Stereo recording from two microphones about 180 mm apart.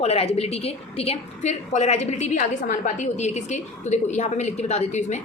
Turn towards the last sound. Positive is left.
turn(degrees=40)  # may be behind; listen again after turning